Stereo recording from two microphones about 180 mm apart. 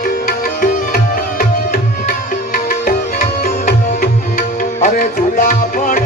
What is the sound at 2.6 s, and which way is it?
Music, 50° left (ahead or behind).